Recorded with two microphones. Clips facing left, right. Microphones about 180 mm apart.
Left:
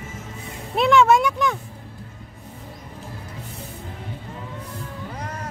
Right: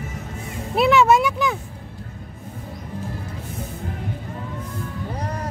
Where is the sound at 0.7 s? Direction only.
5° right (ahead or behind).